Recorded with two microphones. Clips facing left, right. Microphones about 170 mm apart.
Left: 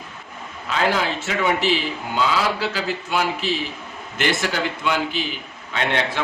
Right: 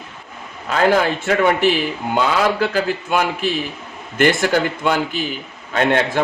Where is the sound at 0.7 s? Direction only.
50° right (ahead or behind).